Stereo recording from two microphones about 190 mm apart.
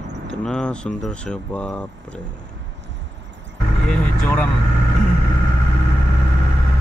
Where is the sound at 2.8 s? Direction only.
70° right (ahead or behind).